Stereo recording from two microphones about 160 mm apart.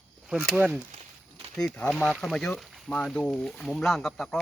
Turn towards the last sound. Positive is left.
turn(degrees=0)  # may be behind; listen again after turning